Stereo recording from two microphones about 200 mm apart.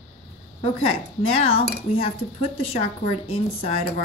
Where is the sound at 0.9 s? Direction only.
30° left (ahead or behind).